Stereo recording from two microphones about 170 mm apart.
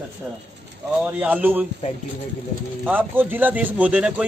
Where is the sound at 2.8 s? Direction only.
10° right (ahead or behind).